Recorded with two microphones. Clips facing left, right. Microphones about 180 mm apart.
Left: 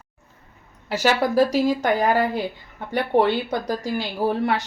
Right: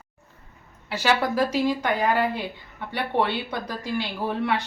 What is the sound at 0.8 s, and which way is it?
Speech, 40° left (ahead or behind).